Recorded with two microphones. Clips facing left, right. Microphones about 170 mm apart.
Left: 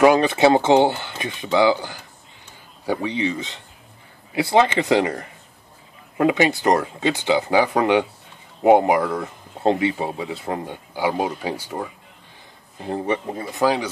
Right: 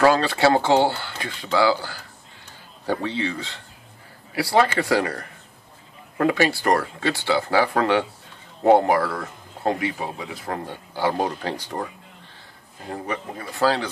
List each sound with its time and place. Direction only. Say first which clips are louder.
0.0 s speech: left 3 dB; 20° left (ahead or behind)
12.8 s speech: left 6 dB; 25° left (ahead or behind)